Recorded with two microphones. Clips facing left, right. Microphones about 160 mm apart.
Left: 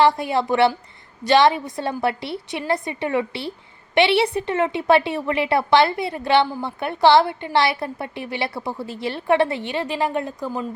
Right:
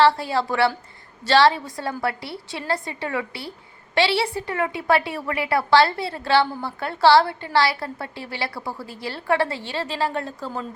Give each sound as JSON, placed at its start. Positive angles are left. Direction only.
{"t": 0.0, "sound": "a woman's voice", "side_deg": 15}